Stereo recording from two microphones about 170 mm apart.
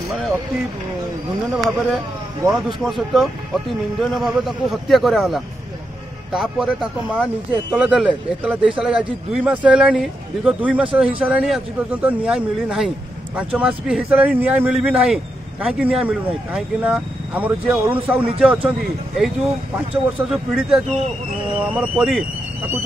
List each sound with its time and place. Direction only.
1.5 s speech: centre (ahead or behind)